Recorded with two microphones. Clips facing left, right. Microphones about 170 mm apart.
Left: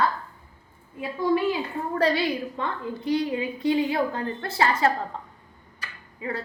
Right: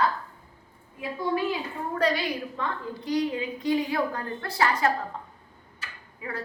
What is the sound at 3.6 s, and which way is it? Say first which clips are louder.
A woman's voice: left 2 dB; 25° left (ahead or behind).